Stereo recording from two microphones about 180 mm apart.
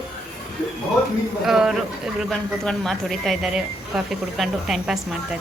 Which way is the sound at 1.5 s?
5° right (ahead or behind).